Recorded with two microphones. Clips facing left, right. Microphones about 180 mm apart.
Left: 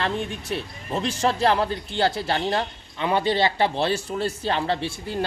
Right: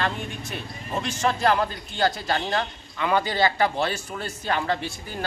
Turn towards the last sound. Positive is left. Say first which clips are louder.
# left 2 dB
turn(degrees=30)  # may be behind; listen again after turning